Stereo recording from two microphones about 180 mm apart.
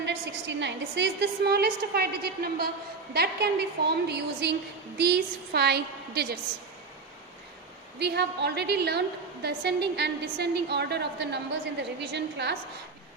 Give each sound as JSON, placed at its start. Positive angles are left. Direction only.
{"t": 0.0, "sound": "a woman's voice", "side_deg": -75}
{"t": 7.9, "sound": "a woman's voice", "side_deg": -70}